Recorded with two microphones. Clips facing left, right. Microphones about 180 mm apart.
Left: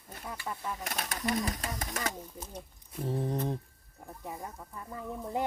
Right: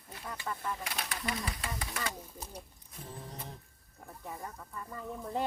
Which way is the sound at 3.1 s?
60° left (ahead or behind).